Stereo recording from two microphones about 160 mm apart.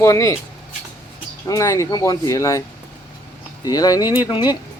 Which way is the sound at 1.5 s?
20° left (ahead or behind).